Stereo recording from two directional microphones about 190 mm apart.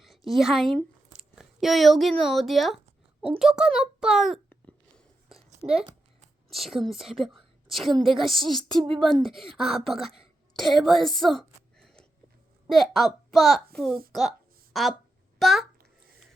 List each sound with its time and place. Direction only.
0.0 s a woman's voice: centre (ahead or behind)
6.5 s speech: centre (ahead or behind)
8.8 s speech: 25° right (ahead or behind)
9.6 s a woman's voice: centre (ahead or behind)
14.1 s a sound: centre (ahead or behind)
15.4 s a child's voice: centre (ahead or behind)